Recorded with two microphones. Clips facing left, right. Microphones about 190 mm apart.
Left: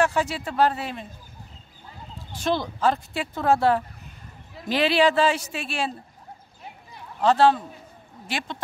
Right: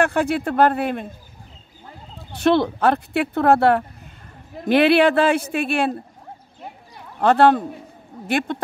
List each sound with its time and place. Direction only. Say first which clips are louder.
0.0 s speech: right 4 dB; 55° right (ahead or behind)
2.3 s speech: right 8 dB; 65° right (ahead or behind)
7.2 s speech: right 4 dB; 60° right (ahead or behind)